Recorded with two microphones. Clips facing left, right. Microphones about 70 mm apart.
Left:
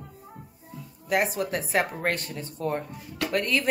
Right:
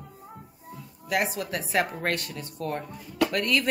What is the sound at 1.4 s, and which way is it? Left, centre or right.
A woman's voice, left.